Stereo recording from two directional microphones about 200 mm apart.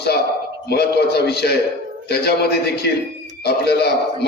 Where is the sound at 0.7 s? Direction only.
55° left (ahead or behind).